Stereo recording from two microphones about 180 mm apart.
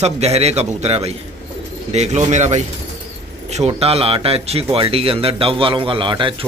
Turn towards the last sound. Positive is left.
turn(degrees=-25)  # may be behind; listen again after turning